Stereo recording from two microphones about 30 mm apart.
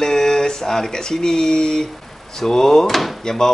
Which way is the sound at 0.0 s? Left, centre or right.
Left.